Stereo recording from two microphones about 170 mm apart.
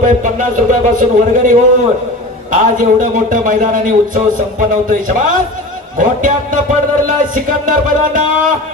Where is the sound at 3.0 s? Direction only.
50° right (ahead or behind).